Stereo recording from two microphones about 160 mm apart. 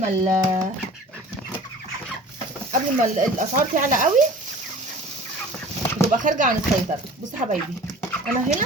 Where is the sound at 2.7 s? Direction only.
55° right (ahead or behind).